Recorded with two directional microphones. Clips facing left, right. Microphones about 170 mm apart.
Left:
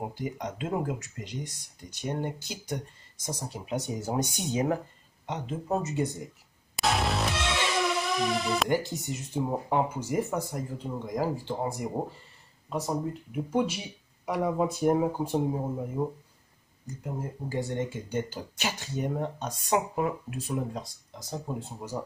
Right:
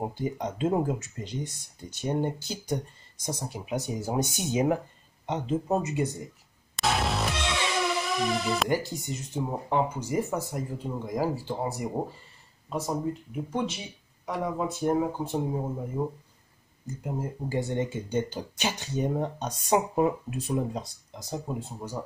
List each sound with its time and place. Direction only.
0.0 s speech: 30° right (ahead or behind)
3.3 s speech: 10° right (ahead or behind)
5.2 s speech: 25° right (ahead or behind)
5.8 s speech: 15° right (ahead or behind)
6.8 s music: centre (ahead or behind)
10.8 s speech: 10° right (ahead or behind); by 15.6 s 10° left (ahead or behind)
16.0 s speech: 5° right (ahead or behind)
17.0 s speech: 20° right (ahead or behind)
21.5 s speech: 10° right (ahead or behind)